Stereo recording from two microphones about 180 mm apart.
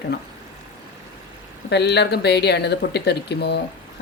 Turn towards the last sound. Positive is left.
turn(degrees=65)  # may be behind; listen again after turning